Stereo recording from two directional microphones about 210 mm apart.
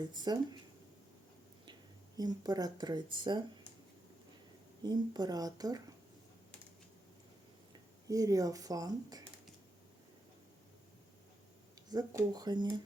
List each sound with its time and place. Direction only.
0.0 s speech: 20° right (ahead or behind)
2.1 s speech: 20° right (ahead or behind)
4.8 s speech: 20° right (ahead or behind)
7.7 s speech: 15° right (ahead or behind)
11.9 s speech: 20° right (ahead or behind)